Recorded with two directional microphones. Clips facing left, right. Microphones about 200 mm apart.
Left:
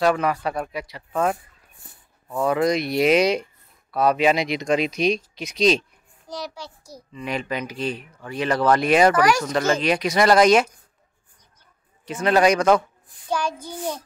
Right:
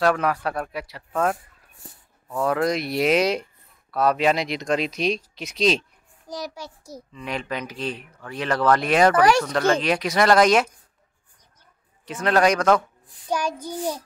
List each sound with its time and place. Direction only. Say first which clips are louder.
0.0 s speech: left 1 dB; centre (ahead or behind)
6.2 s a child's voice: even; 40° right (ahead or behind)
6.5 s a child's voice: right 1 dB; 20° right (ahead or behind)
7.1 s speech: left 2 dB; 5° left (ahead or behind)
12.1 s speech: left 2 dB; centre (ahead or behind)
13.4 s child singing: even; 40° right (ahead or behind)